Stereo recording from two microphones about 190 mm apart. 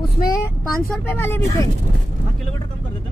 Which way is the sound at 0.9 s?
10° left (ahead or behind).